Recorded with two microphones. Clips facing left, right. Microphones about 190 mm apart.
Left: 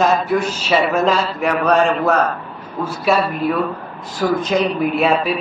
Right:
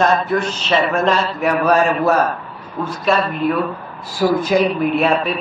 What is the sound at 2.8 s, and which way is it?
Speech, 5° left (ahead or behind).